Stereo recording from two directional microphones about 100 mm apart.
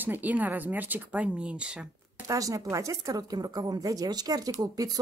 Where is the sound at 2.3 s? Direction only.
35° right (ahead or behind).